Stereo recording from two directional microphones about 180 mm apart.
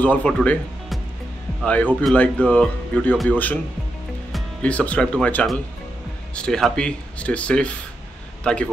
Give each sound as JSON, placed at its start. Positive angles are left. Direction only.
{"t": 0.0, "sound": "speech", "side_deg": 10}